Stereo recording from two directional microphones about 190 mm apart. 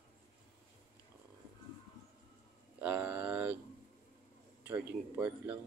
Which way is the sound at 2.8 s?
5° right (ahead or behind).